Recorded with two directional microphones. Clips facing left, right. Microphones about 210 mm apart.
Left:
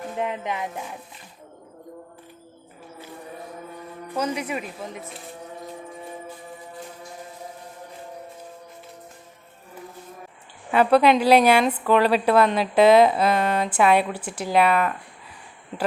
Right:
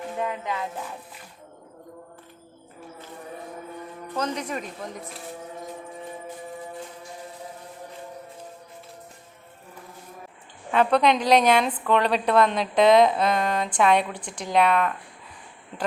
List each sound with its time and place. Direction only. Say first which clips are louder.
0.2 s speech: left 2 dB; 20° left (ahead or behind)
4.1 s speech: left 2 dB; 10° left (ahead or behind)
10.7 s a woman's voice: left 3 dB; 5° left (ahead or behind)